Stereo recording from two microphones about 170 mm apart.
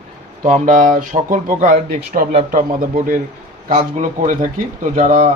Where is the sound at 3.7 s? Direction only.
45° right (ahead or behind).